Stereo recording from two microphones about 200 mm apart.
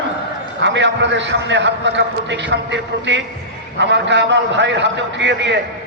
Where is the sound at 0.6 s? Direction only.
65° right (ahead or behind).